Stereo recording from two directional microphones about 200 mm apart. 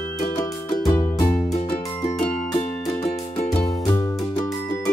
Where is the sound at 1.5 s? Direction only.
35° left (ahead or behind).